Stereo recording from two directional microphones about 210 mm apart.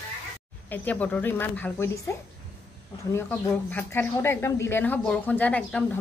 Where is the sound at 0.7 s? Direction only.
5° left (ahead or behind).